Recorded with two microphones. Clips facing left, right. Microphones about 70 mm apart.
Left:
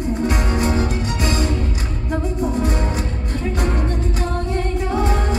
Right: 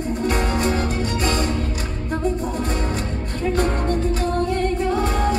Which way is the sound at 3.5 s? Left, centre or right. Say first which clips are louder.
Right 3 dB; right.